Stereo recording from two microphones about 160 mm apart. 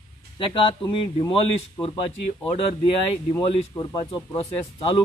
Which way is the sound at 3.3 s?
25° left (ahead or behind).